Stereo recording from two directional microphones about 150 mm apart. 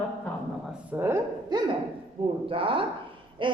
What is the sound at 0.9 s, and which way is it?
Speech, 15° right (ahead or behind).